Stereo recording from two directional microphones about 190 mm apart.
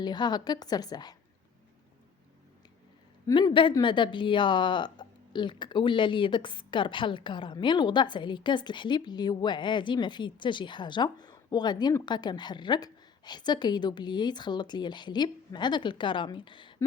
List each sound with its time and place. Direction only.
0.0 s a woman's voice: 20° left (ahead or behind)
3.2 s a woman's voice: 25° left (ahead or behind)